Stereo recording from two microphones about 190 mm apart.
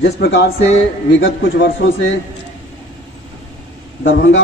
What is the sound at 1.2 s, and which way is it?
Speech, 80° left.